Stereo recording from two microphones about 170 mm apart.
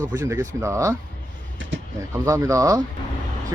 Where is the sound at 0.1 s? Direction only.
20° right (ahead or behind).